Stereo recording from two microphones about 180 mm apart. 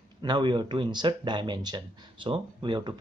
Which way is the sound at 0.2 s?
25° right (ahead or behind).